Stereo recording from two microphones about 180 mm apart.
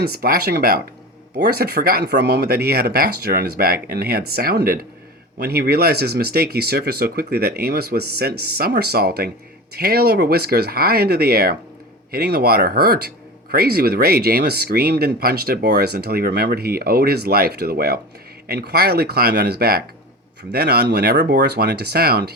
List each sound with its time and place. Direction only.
0.0 s speech: 55° right (ahead or behind)